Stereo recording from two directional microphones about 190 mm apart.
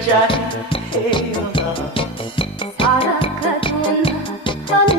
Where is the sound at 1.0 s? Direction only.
25° left (ahead or behind).